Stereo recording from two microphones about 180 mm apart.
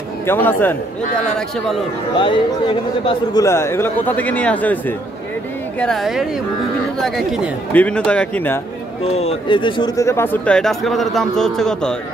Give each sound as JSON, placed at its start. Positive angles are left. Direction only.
{"t": 0.3, "sound": "speech", "side_deg": 10}
{"t": 2.1, "sound": "a man's voice", "side_deg": 30}
{"t": 3.4, "sound": "a woman's voice", "side_deg": 15}
{"t": 9.0, "sound": "speech", "side_deg": 35}